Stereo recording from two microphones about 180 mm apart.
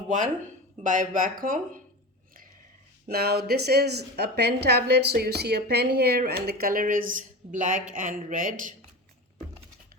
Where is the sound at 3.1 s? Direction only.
60° right (ahead or behind).